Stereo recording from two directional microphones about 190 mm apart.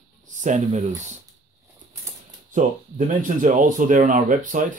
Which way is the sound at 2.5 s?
45° right (ahead or behind).